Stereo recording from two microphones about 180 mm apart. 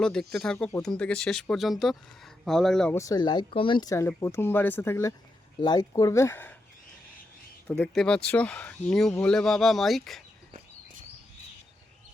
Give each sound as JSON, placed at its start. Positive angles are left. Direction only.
{"t": 0.0, "sound": "speech", "side_deg": 5}
{"t": 2.9, "sound": "speech", "side_deg": 20}
{"t": 7.7, "sound": "speech", "side_deg": 5}